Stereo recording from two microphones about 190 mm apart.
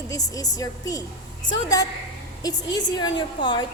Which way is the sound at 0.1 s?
20° left (ahead or behind).